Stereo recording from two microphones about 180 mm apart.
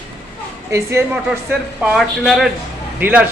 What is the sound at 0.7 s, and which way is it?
Speech, 15° right (ahead or behind).